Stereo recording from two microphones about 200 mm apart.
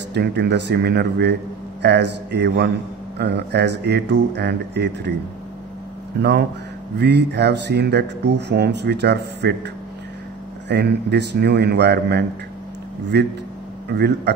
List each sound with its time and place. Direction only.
0.1 s speech: 55° right (ahead or behind)
7.0 s speech: 60° right (ahead or behind)
10.7 s speech: 55° right (ahead or behind)